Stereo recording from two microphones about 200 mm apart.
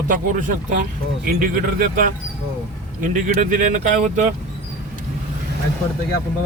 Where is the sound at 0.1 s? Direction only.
40° right (ahead or behind).